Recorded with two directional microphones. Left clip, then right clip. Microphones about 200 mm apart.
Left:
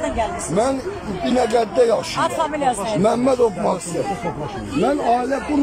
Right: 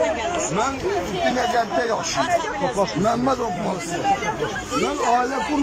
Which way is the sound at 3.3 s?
15° left (ahead or behind).